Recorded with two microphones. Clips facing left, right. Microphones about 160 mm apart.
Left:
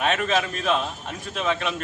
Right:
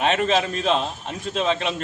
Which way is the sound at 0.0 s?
20° right (ahead or behind).